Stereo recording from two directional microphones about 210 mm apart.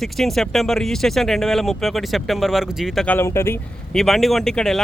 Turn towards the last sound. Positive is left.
turn(degrees=0)  # may be behind; listen again after turning